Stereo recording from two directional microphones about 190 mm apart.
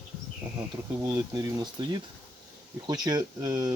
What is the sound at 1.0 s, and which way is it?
Speech, 15° right (ahead or behind).